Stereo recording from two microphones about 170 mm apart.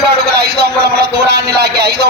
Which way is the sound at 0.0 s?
70° right (ahead or behind).